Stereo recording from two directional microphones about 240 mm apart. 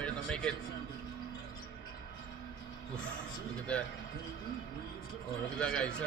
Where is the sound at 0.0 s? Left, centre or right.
Centre.